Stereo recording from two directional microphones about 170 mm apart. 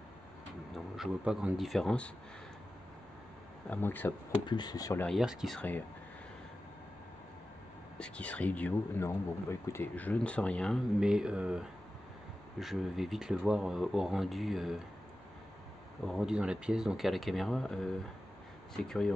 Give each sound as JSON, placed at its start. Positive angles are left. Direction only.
{"t": 0.7, "sound": "speech", "side_deg": 0}
{"t": 3.7, "sound": "speech", "side_deg": 10}
{"t": 4.5, "sound": "speech", "side_deg": 25}
{"t": 5.0, "sound": "speech", "side_deg": 0}
{"t": 8.0, "sound": "speech", "side_deg": 5}
{"t": 16.1, "sound": "speech", "side_deg": -5}